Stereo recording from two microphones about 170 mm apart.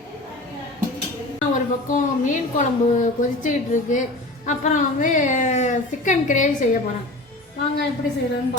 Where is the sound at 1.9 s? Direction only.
50° left (ahead or behind).